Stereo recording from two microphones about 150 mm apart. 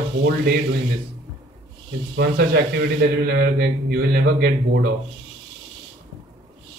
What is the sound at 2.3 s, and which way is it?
A man's voice, 90° right.